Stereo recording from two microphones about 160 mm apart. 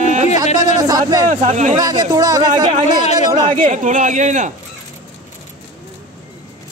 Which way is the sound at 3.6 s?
50° right (ahead or behind).